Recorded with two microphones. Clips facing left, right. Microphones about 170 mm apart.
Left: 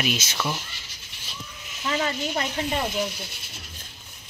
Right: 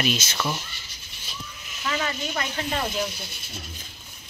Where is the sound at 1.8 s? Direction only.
25° left (ahead or behind).